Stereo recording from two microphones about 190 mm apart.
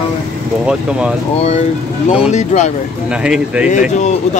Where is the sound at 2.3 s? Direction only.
40° left (ahead or behind).